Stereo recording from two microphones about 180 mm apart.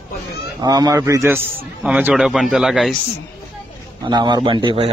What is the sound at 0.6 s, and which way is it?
A man's voice, 20° right (ahead or behind).